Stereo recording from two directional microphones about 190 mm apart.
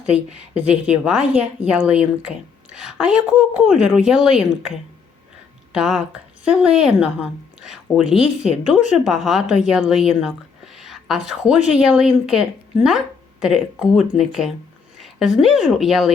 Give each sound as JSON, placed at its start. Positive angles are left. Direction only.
{"t": 0.0, "sound": "a woman's voice", "side_deg": -5}